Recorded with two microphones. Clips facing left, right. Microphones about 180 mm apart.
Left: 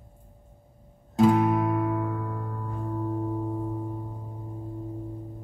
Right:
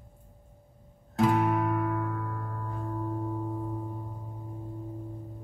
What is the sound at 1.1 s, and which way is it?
Guitar, 30° left (ahead or behind).